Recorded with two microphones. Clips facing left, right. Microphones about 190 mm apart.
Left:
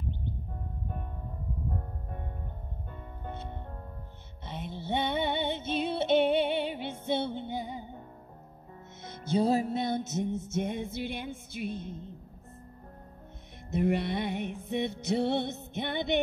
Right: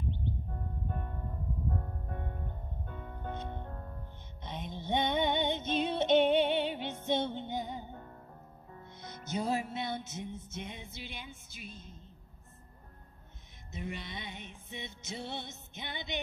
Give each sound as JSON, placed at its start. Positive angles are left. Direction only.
{"t": 2.9, "sound": "music", "side_deg": 5}
{"t": 9.0, "sound": "music", "side_deg": 30}
{"t": 13.7, "sound": "music", "side_deg": 65}